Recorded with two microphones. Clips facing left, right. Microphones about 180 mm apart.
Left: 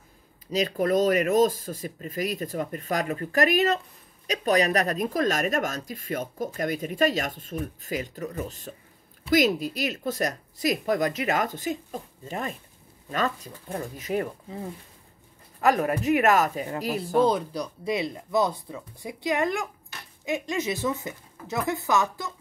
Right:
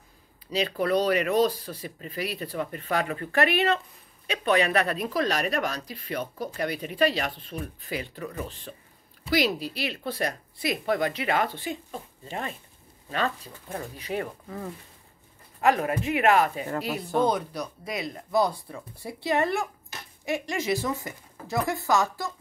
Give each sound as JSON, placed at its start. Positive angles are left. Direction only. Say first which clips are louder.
{"t": 0.5, "sound": "speech", "louder": "left 2 dB", "side_deg": 45}
{"t": 15.6, "sound": "speech", "louder": "left 1 dB", "side_deg": 40}